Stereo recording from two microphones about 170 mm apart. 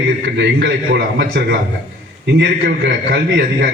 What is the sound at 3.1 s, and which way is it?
Speech, 80° right.